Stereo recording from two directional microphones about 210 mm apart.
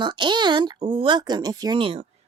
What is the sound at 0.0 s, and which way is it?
Speech, 20° right (ahead or behind).